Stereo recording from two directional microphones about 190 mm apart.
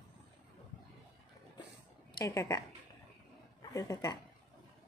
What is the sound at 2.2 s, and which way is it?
Speech, 15° left (ahead or behind).